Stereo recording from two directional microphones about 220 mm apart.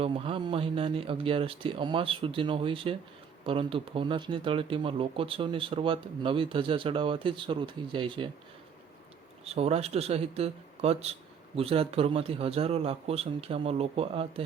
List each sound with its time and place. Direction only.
0.0 s speech: 25° right (ahead or behind)
9.4 s speech: 30° right (ahead or behind)